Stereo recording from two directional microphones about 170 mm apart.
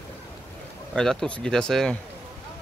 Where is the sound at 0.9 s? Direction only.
5° left (ahead or behind).